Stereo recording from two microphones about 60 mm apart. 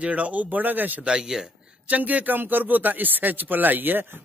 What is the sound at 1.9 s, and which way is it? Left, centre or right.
A man's voice, right.